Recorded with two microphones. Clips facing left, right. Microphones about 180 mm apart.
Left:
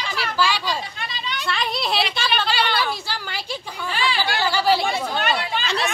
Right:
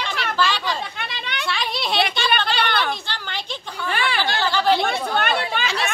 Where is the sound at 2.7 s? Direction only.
55° right (ahead or behind).